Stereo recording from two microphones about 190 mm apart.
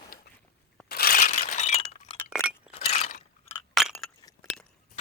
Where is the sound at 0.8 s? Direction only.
55° left (ahead or behind); by 2.2 s 30° left (ahead or behind).